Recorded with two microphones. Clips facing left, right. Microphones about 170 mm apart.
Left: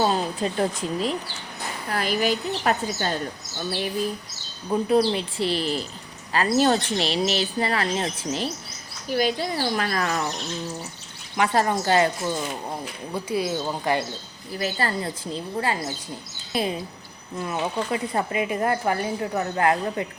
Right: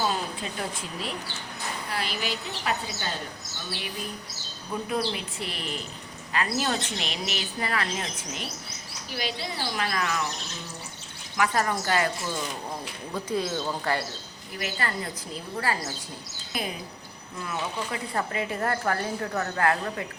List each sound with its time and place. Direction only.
0.0 s a woman's voice: 40° left (ahead or behind)
4.7 s speech: 30° left (ahead or behind)
9.0 s a woman's voice: 45° left (ahead or behind)
11.3 s speech: 25° left (ahead or behind)
12.8 s speech: 10° left (ahead or behind)
14.6 s a woman's voice: 30° left (ahead or behind)